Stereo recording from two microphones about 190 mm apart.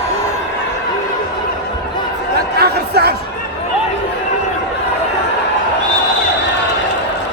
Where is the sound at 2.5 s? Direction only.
55° right (ahead or behind).